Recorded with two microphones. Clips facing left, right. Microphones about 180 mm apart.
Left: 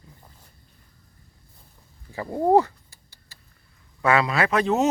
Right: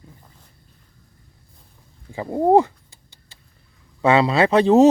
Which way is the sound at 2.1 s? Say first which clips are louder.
Right 3 dB; 20° right (ahead or behind).